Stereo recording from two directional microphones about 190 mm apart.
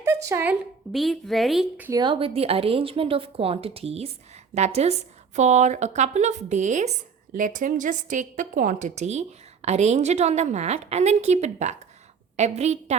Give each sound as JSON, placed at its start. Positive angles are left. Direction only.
{"t": 0.0, "sound": "a sound", "side_deg": -15}
{"t": 0.9, "sound": "a woman's voice", "side_deg": 0}
{"t": 1.9, "sound": "a woman's voice", "side_deg": -25}